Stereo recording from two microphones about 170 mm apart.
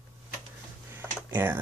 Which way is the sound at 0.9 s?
10° right (ahead or behind).